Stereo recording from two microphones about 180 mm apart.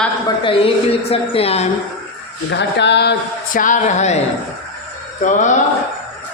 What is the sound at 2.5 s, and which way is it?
Speech, 75° left (ahead or behind).